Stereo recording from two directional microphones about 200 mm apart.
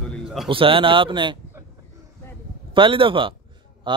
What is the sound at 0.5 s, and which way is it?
Speech, 25° right (ahead or behind).